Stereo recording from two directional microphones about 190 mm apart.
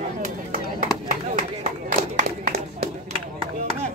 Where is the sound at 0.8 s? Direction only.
40° right (ahead or behind).